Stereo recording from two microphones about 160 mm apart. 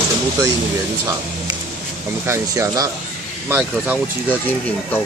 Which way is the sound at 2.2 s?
15° right (ahead or behind).